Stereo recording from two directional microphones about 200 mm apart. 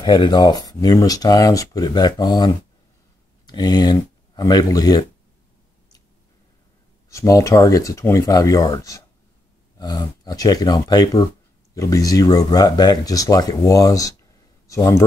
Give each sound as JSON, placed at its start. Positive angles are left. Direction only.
{"t": 0.0, "sound": "speech", "side_deg": 20}
{"t": 7.1, "sound": "speech", "side_deg": 15}